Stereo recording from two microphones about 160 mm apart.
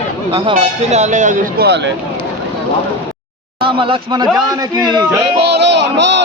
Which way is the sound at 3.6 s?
35° right (ahead or behind).